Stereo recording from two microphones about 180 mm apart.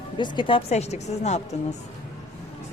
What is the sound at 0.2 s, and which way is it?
A woman's voice, 25° left (ahead or behind).